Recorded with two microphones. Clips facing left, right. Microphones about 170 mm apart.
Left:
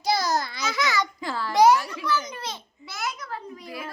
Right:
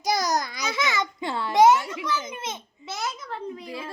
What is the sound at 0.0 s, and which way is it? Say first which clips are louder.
Babbling: even; 20° right (ahead or behind).